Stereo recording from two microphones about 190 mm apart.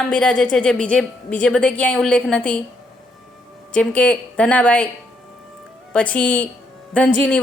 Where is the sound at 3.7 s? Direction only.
5° left (ahead or behind).